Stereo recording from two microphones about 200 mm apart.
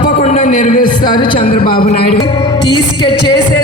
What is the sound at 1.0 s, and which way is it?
Speech, 25° left (ahead or behind).